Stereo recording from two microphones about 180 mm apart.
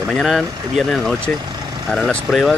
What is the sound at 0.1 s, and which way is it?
Speech, centre (ahead or behind).